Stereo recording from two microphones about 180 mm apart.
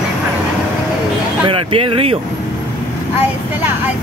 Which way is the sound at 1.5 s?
30° right (ahead or behind).